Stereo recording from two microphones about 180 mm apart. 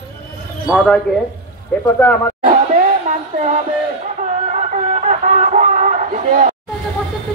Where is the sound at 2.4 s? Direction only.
50° right (ahead or behind).